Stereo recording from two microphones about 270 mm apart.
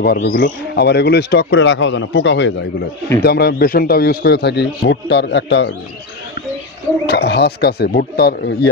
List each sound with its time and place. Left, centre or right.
0.0 s speech: left
7.1 s speech: left